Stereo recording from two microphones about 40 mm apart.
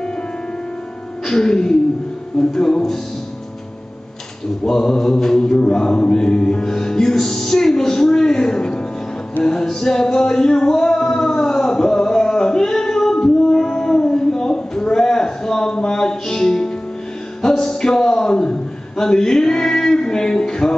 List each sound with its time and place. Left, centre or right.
1.2 s mantra: centre
4.6 s mantra: centre
9.4 s music: centre
17.4 s a sound: centre